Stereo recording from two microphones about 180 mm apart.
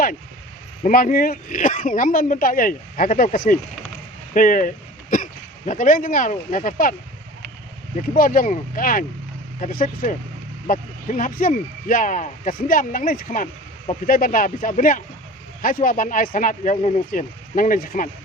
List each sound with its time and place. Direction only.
0.8 s speech: 50° left (ahead or behind)
8.1 s speech: 50° left (ahead or behind)